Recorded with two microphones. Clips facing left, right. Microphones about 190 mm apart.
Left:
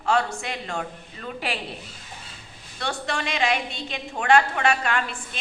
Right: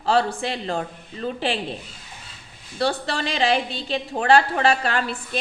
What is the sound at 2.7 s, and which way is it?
A woman's voice, 35° right (ahead or behind).